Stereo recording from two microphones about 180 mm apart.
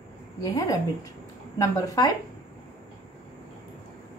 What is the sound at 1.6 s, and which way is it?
Speech, 20° left (ahead or behind).